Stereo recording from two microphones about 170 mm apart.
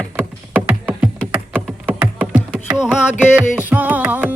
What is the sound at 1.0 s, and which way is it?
Music, 5° right (ahead or behind).